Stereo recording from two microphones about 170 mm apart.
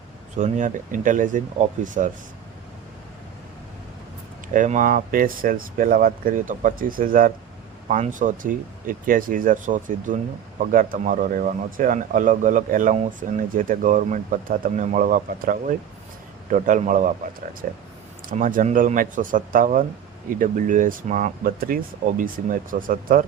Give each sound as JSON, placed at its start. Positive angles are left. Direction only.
{"t": 0.3, "sound": "speech", "side_deg": -45}
{"t": 4.5, "sound": "speech", "side_deg": -50}